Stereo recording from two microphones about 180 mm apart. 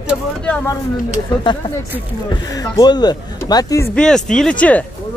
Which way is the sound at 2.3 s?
20° left (ahead or behind).